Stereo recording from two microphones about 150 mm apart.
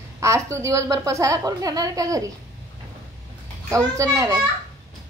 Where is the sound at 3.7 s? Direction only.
20° right (ahead or behind).